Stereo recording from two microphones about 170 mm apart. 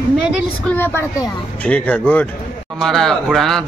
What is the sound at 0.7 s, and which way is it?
Speech, 10° left (ahead or behind).